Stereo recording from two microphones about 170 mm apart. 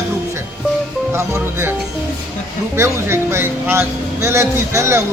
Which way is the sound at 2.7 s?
15° right (ahead or behind).